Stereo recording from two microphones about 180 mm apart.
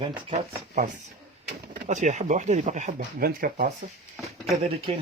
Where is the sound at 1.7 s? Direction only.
45° right (ahead or behind).